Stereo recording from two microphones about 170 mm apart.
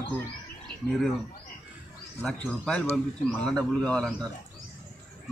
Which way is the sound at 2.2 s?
5° left (ahead or behind).